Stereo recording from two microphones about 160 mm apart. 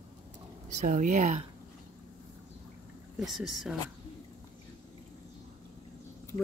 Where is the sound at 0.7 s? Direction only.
50° right (ahead or behind).